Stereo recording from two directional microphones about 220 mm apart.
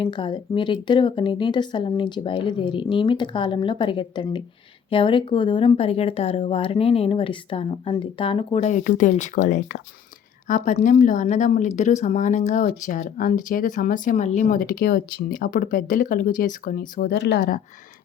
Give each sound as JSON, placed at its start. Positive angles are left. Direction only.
{"t": 0.0, "sound": "speech", "side_deg": 20}